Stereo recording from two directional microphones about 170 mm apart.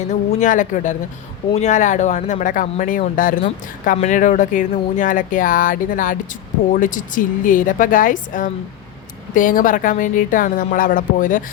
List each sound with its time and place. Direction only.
0.0 s speech: 45° left (ahead or behind)